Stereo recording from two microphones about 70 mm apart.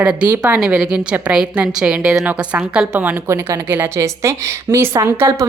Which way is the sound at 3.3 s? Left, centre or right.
Right.